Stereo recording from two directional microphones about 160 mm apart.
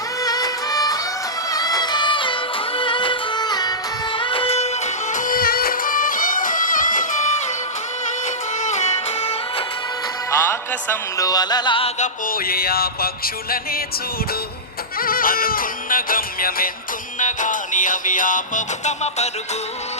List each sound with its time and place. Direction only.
0.2 s music: 25° left (ahead or behind); by 7.2 s 55° left (ahead or behind)
8.6 s music: 45° left (ahead or behind)
10.3 s music: 15° left (ahead or behind)
11.9 s music: 55° left (ahead or behind)
14.9 s music: 65° left (ahead or behind)
17.2 s music: 50° left (ahead or behind)